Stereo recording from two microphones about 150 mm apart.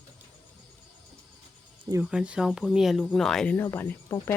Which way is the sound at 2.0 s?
5° right (ahead or behind).